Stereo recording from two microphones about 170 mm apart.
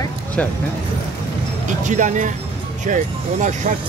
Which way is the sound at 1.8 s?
45° right (ahead or behind).